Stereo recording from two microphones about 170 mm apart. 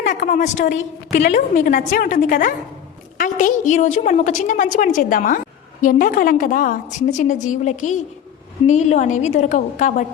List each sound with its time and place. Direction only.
0.0 s a woman's voice: 50° left (ahead or behind)